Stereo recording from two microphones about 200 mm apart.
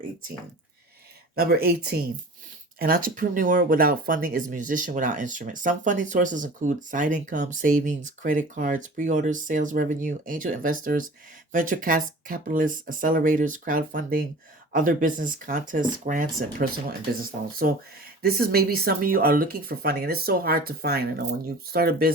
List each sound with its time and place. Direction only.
1.4 s speech: 50° right (ahead or behind)